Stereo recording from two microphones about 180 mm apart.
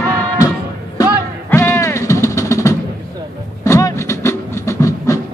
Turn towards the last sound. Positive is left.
turn(degrees=15)  # may be behind; listen again after turning